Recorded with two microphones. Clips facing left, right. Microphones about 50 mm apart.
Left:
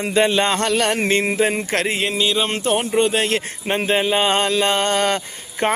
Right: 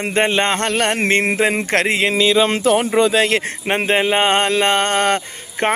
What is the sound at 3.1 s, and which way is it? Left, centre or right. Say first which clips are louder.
Speech: right 4 dB; right.